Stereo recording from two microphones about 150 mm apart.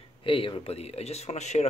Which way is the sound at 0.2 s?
35° left (ahead or behind).